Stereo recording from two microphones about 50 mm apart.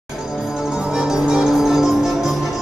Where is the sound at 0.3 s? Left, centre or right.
Centre.